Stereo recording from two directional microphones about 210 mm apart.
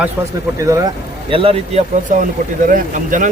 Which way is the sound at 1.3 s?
25° right (ahead or behind).